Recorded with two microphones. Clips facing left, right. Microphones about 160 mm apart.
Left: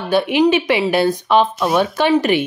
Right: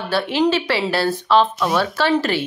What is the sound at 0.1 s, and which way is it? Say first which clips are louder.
Speech: left 4 dB; 15° left (ahead or behind).